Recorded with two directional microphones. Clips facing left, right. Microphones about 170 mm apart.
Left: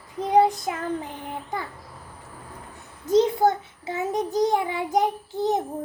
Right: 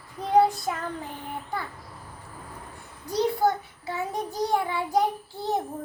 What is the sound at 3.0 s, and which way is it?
A child's voice, 20° left (ahead or behind).